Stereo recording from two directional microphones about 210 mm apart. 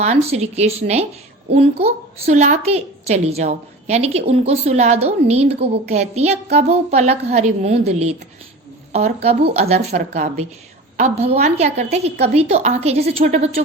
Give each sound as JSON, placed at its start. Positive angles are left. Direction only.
{"t": 0.0, "sound": "a woman's voice", "side_deg": -30}
{"t": 9.2, "sound": "a woman's voice", "side_deg": -30}